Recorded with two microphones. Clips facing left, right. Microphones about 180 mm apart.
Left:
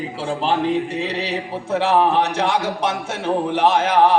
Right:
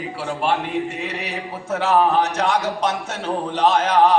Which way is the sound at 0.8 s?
35° left (ahead or behind).